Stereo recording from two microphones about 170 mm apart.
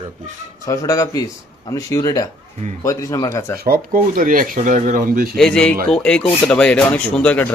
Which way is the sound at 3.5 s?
65° right (ahead or behind).